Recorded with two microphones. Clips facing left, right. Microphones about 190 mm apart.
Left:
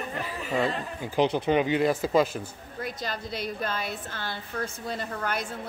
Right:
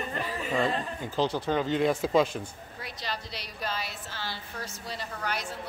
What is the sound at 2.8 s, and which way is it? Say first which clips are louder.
A woman's voice: left 4 dB; 50° left (ahead or behind).